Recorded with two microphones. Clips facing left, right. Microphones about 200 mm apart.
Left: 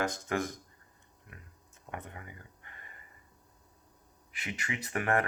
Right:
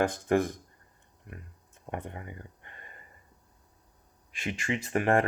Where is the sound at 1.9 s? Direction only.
30° right (ahead or behind).